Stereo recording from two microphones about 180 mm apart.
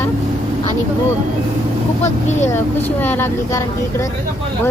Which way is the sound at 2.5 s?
10° left (ahead or behind).